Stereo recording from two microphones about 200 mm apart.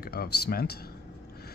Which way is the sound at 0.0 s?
50° left (ahead or behind).